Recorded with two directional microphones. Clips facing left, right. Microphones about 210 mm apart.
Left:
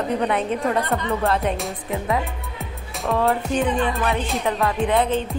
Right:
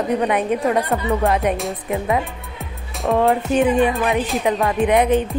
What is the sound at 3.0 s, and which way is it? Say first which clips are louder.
Speech: right 4 dB; 30° right (ahead or behind).